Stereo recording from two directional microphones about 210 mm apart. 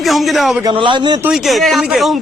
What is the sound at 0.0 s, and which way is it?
Speech, centre (ahead or behind).